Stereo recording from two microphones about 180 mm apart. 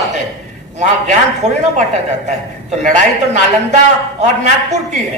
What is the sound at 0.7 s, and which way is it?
A man's voice, 40° right (ahead or behind).